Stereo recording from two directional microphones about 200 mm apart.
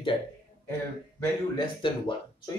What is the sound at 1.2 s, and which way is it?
A man's voice, 20° left (ahead or behind).